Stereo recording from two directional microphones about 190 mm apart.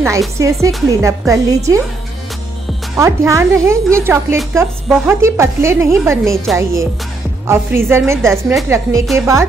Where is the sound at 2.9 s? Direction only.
15° right (ahead or behind).